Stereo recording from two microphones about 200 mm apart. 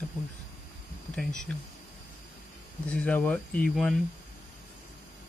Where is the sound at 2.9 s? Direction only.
5° left (ahead or behind).